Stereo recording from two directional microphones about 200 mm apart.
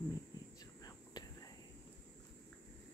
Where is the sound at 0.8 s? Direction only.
20° left (ahead or behind).